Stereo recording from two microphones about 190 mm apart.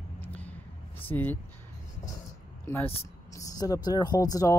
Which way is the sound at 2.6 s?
10° left (ahead or behind).